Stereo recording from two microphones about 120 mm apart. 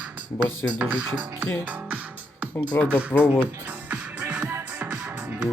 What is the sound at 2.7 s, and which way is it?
Speech, 20° left (ahead or behind).